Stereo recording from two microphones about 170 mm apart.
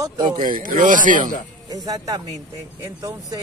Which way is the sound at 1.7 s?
20° right (ahead or behind).